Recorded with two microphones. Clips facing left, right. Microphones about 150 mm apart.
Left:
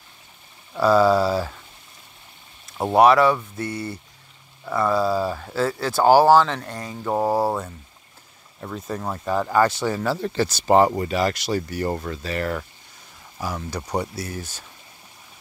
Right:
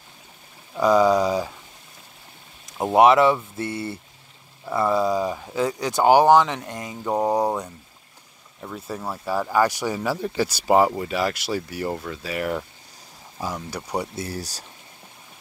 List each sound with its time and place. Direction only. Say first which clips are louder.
0.7 s speech: left 1 dB; 15° right (ahead or behind)
3.0 s speech: even; 20° right (ahead or behind)
7.1 s speech: even; centre (ahead or behind)
8.5 s speech: left 2 dB; 5° right (ahead or behind)
13.4 s speech: left 1 dB; 25° right (ahead or behind)